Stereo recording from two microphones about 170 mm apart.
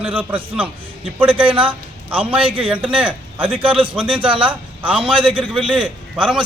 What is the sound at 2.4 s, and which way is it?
Speech, 30° right (ahead or behind).